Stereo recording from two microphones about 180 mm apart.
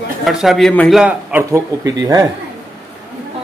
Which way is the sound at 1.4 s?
20° right (ahead or behind).